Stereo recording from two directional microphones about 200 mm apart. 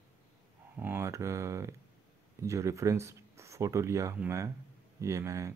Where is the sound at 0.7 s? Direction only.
10° right (ahead or behind).